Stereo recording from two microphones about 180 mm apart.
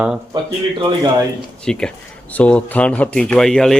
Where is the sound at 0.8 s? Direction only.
25° right (ahead or behind).